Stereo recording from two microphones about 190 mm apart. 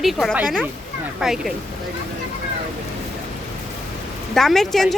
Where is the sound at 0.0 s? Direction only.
Centre (ahead or behind).